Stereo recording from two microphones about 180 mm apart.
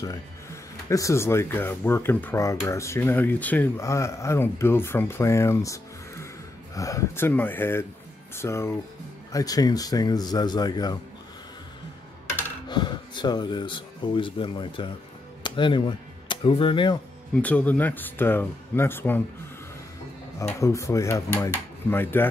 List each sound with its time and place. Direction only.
0.0 s speech: 15° left (ahead or behind)
12.6 s speech: 25° left (ahead or behind)
17.4 s speech: 10° left (ahead or behind)
20.3 s speech: 15° left (ahead or behind)